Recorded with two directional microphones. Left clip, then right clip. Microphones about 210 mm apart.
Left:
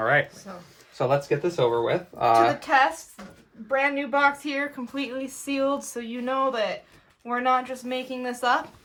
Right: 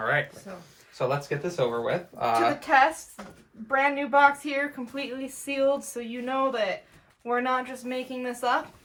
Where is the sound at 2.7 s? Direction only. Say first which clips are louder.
Even; centre (ahead or behind).